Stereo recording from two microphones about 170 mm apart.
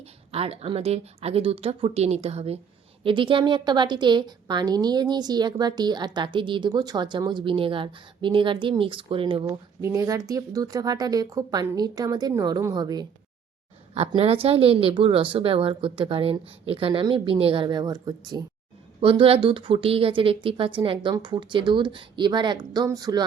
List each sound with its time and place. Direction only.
0.3 s a woman's voice: 35° right (ahead or behind)
13.9 s a woman's voice: 35° right (ahead or behind)
18.9 s a woman's voice: 35° right (ahead or behind)